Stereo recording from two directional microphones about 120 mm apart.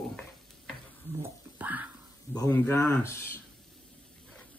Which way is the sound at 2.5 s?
15° left (ahead or behind).